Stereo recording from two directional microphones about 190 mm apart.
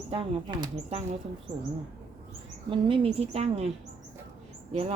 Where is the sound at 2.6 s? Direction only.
25° right (ahead or behind).